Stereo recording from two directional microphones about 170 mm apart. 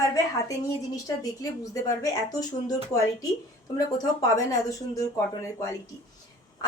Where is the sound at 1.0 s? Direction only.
20° left (ahead or behind).